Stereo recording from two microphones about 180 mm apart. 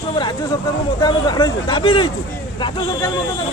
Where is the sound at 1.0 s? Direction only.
20° left (ahead or behind).